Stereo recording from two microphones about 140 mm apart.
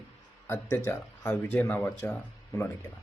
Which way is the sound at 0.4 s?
20° left (ahead or behind).